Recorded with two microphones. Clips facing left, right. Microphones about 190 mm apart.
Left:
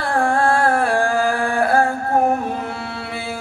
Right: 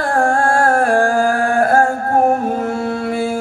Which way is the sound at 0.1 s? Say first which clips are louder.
Right 1 dB; 45° right (ahead or behind).